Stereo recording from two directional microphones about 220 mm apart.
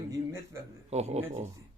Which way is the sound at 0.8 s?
30° right (ahead or behind).